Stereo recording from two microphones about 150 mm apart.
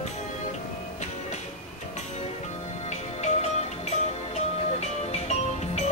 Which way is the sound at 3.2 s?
50° left (ahead or behind).